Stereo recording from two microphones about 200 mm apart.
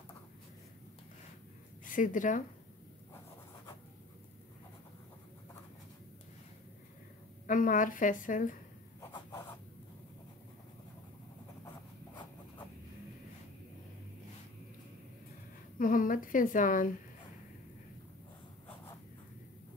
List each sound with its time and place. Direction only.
1.9 s a woman's voice: 40° left (ahead or behind)
7.4 s a woman's voice: 40° left (ahead or behind)
15.8 s a woman's voice: 40° left (ahead or behind)